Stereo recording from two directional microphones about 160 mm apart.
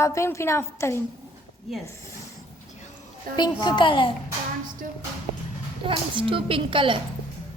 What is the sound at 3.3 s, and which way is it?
Speech, 70° right (ahead or behind).